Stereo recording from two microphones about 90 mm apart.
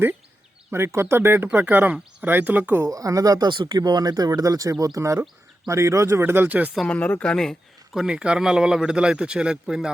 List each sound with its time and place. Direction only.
0.7 s speech: 30° right (ahead or behind)
1.5 s speech: 15° right (ahead or behind)
2.8 s speech: 40° right (ahead or behind)
3.5 s speech: 55° right (ahead or behind); by 6.7 s 20° right (ahead or behind)
6.8 s speech: 15° left (ahead or behind)
7.9 s speech: 10° right (ahead or behind)